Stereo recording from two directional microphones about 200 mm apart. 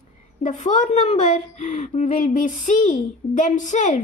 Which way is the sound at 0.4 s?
40° left (ahead or behind).